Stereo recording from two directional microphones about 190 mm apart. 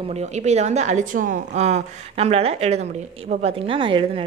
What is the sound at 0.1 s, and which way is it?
A woman's voice, 35° right (ahead or behind).